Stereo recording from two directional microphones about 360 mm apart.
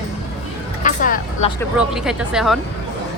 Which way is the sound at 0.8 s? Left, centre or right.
Left.